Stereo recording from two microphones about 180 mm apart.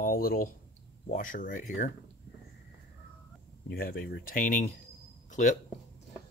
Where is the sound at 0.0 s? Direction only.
55° left (ahead or behind).